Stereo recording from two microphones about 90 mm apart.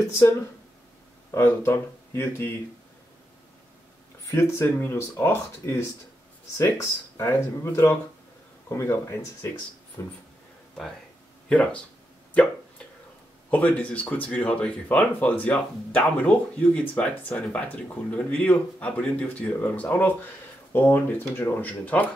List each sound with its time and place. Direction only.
1.3 s speech: 25° left (ahead or behind)
4.3 s speech: 30° left (ahead or behind)
10.0 s a sound: 35° left (ahead or behind)
11.4 s speech: 15° left (ahead or behind)
13.5 s speech: 20° left (ahead or behind)